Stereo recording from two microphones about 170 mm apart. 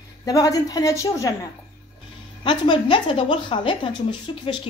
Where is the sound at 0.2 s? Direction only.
20° left (ahead or behind).